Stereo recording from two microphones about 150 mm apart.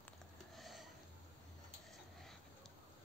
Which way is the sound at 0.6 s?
Centre (ahead or behind).